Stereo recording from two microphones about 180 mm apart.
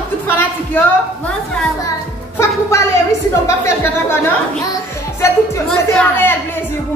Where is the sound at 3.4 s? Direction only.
15° left (ahead or behind).